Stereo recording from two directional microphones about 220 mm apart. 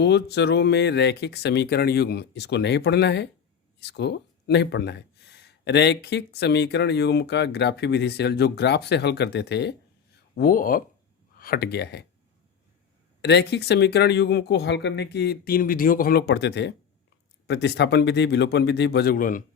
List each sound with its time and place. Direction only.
0.0 s speech: 50° left (ahead or behind)
13.2 s speech: 50° left (ahead or behind)